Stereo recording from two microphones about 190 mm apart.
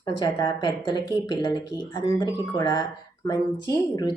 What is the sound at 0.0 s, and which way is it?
A woman's voice, 25° left (ahead or behind).